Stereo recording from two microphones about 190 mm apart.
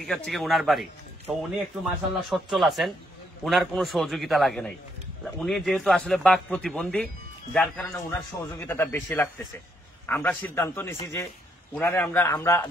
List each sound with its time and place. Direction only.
0.0 s a man's voice: centre (ahead or behind)